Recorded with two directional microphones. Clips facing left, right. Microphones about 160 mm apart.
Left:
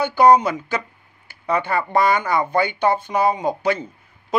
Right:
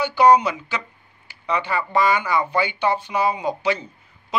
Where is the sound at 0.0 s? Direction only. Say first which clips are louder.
Left 1 dB; 50° left (ahead or behind).